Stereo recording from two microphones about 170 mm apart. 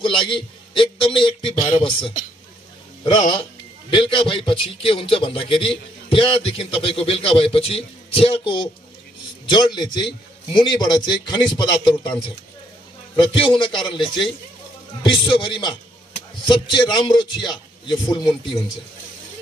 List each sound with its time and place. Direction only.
0.0 s a man's voice: 30° left (ahead or behind)
3.9 s a man's voice: 30° left (ahead or behind)
13.1 s a man's voice: 30° left (ahead or behind)